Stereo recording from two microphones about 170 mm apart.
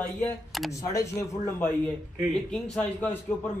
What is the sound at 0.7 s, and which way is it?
Speech, 20° left (ahead or behind).